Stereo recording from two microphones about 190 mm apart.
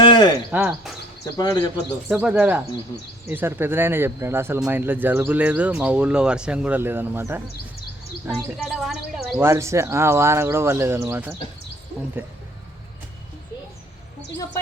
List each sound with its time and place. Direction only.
0.0 s a sound: 25° left (ahead or behind)
0.5 s speech: 5° right (ahead or behind)
1.4 s speech: 20° left (ahead or behind)
2.0 s speech: 5° right (ahead or behind)
8.5 s speech: centre (ahead or behind)
9.5 s speech: 15° right (ahead or behind)